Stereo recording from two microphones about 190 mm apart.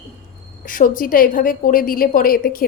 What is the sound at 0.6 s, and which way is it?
A woman's voice, 45° left (ahead or behind).